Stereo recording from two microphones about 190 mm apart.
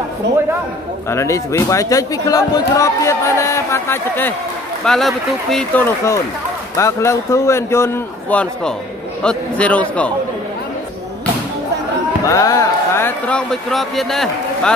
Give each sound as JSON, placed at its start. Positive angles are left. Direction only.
{"t": 1.1, "sound": "speech", "side_deg": 15}
{"t": 4.8, "sound": "speech", "side_deg": 0}
{"t": 6.8, "sound": "speech", "side_deg": 15}
{"t": 12.3, "sound": "speech", "side_deg": 20}